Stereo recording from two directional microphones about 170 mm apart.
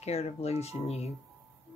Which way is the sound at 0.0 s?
40° left (ahead or behind).